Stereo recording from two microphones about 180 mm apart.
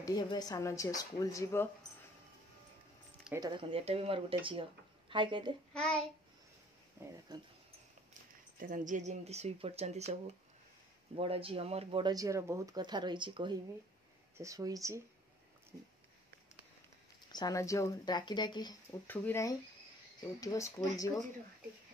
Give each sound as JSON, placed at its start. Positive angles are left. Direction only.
{"t": 0.0, "sound": "speech", "side_deg": 20}
{"t": 3.3, "sound": "speech", "side_deg": -25}
{"t": 5.7, "sound": "child singing", "side_deg": 5}
{"t": 7.0, "sound": "speech", "side_deg": -25}
{"t": 8.5, "sound": "speech", "side_deg": -50}
{"t": 17.3, "sound": "speech", "side_deg": 20}
{"t": 19.0, "sound": "speech", "side_deg": 15}